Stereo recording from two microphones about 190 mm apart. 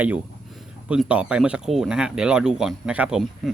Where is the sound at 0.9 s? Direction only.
5° right (ahead or behind).